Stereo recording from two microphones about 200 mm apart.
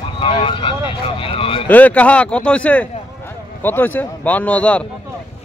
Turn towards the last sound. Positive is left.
turn(degrees=5)  # may be behind; listen again after turning